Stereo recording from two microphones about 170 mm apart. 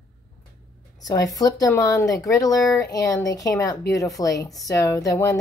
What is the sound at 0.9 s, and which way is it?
A woman's voice, 20° left (ahead or behind).